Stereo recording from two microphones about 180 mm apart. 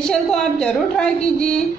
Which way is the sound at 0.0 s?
5° left (ahead or behind).